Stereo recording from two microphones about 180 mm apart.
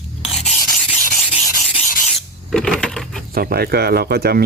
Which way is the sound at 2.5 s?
5° left (ahead or behind).